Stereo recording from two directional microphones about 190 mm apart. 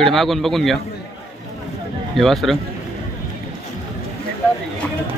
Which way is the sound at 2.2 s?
Centre (ahead or behind).